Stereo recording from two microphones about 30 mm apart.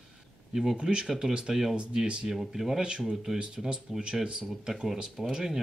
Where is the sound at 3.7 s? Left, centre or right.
Right.